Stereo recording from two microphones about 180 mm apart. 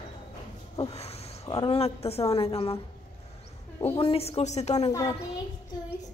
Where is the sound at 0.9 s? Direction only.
35° left (ahead or behind).